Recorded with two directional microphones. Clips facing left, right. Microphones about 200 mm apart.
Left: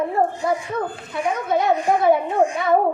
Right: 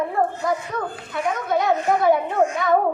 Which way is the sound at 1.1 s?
Centre (ahead or behind).